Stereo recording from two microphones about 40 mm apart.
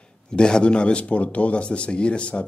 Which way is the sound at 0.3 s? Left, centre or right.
Left.